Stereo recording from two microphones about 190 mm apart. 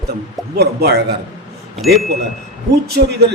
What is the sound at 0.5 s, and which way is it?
Speech, 60° right (ahead or behind).